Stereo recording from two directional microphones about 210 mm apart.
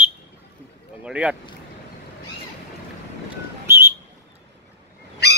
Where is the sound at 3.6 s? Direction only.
10° right (ahead or behind).